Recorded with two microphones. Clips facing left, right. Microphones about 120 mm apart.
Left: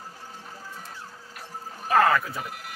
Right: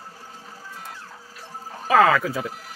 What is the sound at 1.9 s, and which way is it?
Speech, 90° right.